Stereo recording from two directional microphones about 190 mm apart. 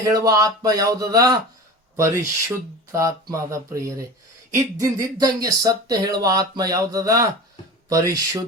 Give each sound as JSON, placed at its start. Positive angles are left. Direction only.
{"t": 0.0, "sound": "speech", "side_deg": -15}